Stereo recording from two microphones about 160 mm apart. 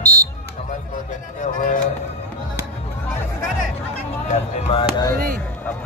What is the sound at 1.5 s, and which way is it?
Speech, 55° left (ahead or behind).